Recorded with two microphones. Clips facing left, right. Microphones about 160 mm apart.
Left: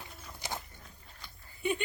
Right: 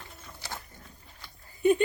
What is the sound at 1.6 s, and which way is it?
Speech, 45° right (ahead or behind).